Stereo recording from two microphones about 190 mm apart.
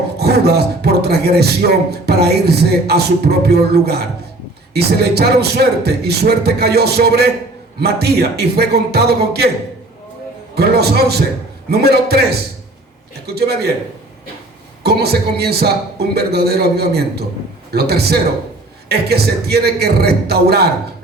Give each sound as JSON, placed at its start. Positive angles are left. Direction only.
{"t": 0.2, "sound": "speech", "side_deg": -60}
{"t": 10.5, "sound": "speech", "side_deg": -55}
{"t": 14.8, "sound": "speech", "side_deg": -60}